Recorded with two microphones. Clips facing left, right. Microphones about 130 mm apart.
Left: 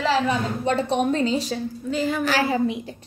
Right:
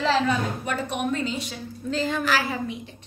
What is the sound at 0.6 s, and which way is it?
Speech, 30° left (ahead or behind).